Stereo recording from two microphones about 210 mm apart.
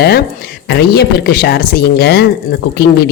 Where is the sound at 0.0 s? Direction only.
50° left (ahead or behind).